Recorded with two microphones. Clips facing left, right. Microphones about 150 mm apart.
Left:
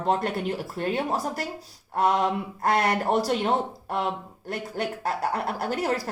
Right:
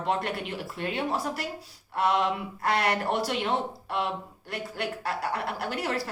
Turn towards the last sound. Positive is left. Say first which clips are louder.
# left 4 dB
turn(degrees=45)  # may be behind; listen again after turning